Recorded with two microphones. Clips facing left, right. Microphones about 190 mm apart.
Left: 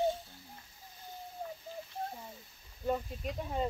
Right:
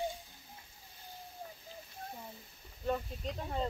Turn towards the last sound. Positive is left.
turn(degrees=10)  # may be behind; listen again after turning